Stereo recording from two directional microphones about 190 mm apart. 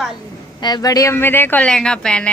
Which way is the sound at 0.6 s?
20° left (ahead or behind).